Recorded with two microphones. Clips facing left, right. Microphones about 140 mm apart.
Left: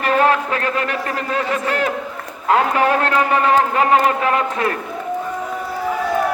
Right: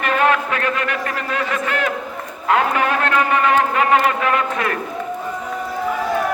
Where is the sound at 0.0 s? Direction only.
35° left (ahead or behind).